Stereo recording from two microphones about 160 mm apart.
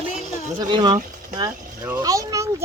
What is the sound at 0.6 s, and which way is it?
Speech, 25° right (ahead or behind).